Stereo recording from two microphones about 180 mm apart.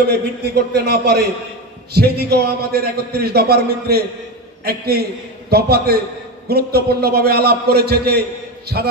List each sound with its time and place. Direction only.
0.1 s a man's voice: 60° right (ahead or behind)